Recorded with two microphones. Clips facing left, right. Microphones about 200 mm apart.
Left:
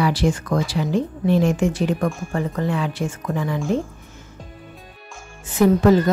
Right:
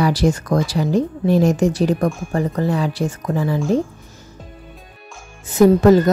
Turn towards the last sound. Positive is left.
turn(degrees=-40)  # may be behind; listen again after turning